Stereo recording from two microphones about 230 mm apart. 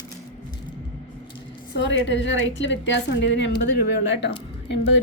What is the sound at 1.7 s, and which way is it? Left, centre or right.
A woman's voice, left.